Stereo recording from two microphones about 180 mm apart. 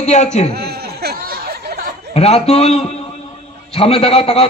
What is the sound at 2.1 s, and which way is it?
A man's voice, 35° left (ahead or behind).